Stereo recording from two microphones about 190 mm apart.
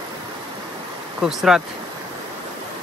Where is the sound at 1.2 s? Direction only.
5° right (ahead or behind).